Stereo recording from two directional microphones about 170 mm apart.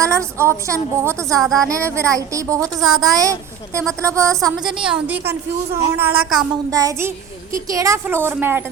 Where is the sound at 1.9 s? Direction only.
20° right (ahead or behind).